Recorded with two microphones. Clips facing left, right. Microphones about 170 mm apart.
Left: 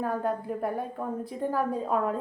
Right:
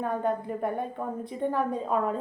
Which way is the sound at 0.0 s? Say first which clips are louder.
Right 1 dB; 5° left (ahead or behind).